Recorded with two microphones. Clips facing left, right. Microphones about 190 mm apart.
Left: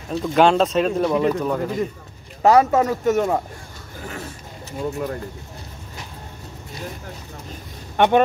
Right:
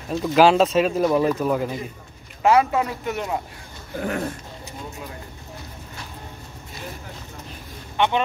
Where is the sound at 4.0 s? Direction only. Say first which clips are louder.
Right 8 dB; 60° right (ahead or behind).